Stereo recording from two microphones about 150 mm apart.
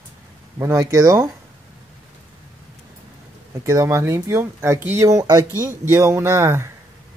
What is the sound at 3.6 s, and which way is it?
Speech, 20° right (ahead or behind).